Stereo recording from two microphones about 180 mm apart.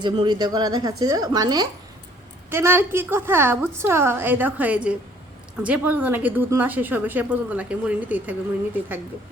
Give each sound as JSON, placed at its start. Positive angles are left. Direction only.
{"t": 0.0, "sound": "speech", "side_deg": -25}